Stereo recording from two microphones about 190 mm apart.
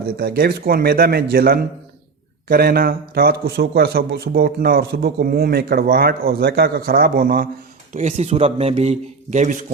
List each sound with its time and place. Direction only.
0.0 s a man's voice: 50° right (ahead or behind)
7.9 s a man's voice: 35° right (ahead or behind)